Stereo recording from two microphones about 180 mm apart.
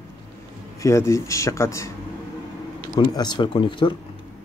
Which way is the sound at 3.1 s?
25° left (ahead or behind).